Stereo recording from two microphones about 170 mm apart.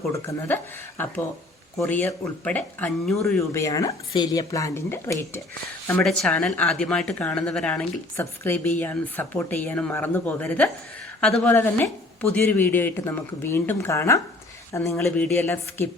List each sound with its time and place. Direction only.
0.1 s speech: 15° left (ahead or behind)
3.5 s speech: 20° left (ahead or behind)
6.0 s speech: 5° left (ahead or behind)